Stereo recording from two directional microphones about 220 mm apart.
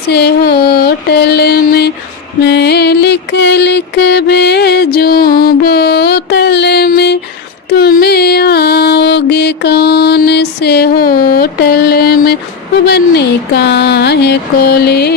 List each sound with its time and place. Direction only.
0.1 s mantra: 50° left (ahead or behind)
2.4 s music: 50° left (ahead or behind)